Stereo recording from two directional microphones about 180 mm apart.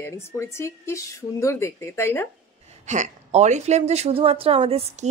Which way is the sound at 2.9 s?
40° right (ahead or behind).